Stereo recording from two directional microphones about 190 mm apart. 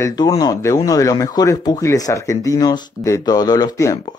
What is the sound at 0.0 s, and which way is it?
Speech, 20° left (ahead or behind).